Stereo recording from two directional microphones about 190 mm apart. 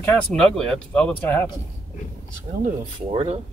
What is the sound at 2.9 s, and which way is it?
Speech, 30° right (ahead or behind).